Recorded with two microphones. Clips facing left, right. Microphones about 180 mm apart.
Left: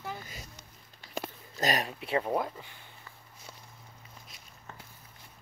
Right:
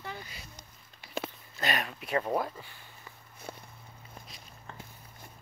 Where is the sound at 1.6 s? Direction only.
40° left (ahead or behind); by 2.8 s 20° left (ahead or behind).